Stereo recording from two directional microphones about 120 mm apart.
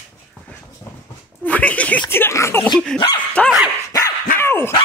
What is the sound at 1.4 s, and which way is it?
Speech, 10° left (ahead or behind).